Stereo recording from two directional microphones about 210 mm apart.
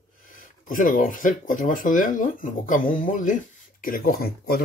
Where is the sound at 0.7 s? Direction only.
40° left (ahead or behind).